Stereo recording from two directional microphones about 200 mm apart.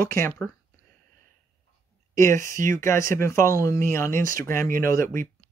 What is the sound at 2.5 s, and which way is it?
Speech, 40° right (ahead or behind).